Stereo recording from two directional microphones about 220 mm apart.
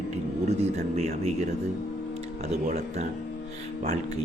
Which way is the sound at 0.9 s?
30° right (ahead or behind).